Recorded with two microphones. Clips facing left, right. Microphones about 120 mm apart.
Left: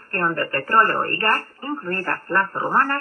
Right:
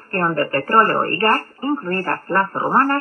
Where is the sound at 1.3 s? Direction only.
25° right (ahead or behind).